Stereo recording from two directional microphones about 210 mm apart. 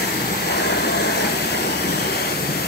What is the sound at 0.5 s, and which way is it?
Vehicle, 50° left (ahead or behind).